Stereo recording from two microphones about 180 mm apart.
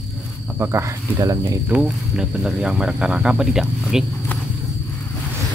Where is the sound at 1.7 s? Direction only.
5° right (ahead or behind).